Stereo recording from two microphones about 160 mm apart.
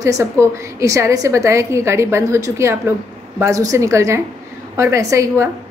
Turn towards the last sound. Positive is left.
turn(degrees=-20)  # may be behind; listen again after turning